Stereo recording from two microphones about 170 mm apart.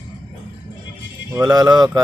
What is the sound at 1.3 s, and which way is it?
Speech, 25° right (ahead or behind).